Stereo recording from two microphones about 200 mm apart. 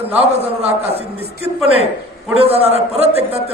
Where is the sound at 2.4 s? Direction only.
30° right (ahead or behind).